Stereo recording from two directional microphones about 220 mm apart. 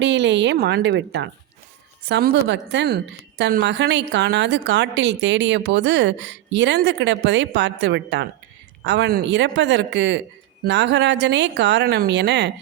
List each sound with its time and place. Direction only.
0.0 s a woman's voice: 55° right (ahead or behind)